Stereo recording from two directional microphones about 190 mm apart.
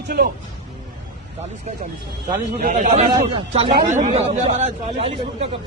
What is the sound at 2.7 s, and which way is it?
Speech, 35° right (ahead or behind).